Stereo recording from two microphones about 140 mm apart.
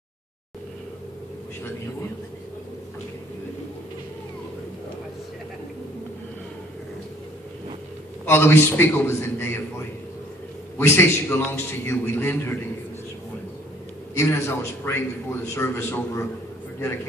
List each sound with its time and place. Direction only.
8.3 s a man's voice: 15° left (ahead or behind)
14.1 s a man's voice: 20° left (ahead or behind)